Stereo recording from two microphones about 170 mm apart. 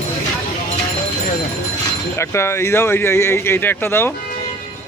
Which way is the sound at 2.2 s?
15° left (ahead or behind).